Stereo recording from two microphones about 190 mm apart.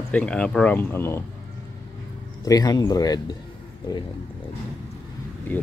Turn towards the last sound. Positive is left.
turn(degrees=10)  # may be behind; listen again after turning